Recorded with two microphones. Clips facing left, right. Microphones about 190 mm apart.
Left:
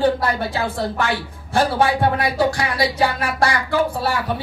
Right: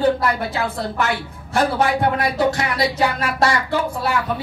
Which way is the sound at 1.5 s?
30° left (ahead or behind).